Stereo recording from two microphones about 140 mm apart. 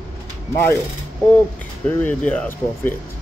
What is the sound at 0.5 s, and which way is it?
Speech, 20° left (ahead or behind).